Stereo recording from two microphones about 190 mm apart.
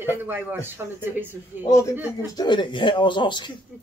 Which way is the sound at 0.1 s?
10° right (ahead or behind).